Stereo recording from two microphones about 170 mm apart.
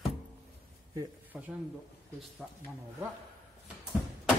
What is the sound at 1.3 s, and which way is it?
Speech, 10° right (ahead or behind).